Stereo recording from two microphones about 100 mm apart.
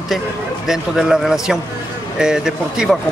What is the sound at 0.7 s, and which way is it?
Speech, 5° right (ahead or behind).